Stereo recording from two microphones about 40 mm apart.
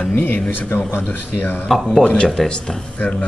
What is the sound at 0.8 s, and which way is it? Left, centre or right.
Speech, left.